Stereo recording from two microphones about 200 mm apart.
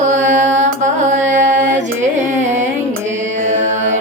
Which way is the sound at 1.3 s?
40° right (ahead or behind).